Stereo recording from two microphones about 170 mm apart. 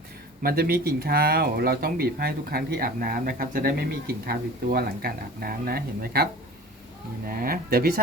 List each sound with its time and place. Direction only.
0.4 s speech: 65° right (ahead or behind)
7.3 s speech: 60° right (ahead or behind)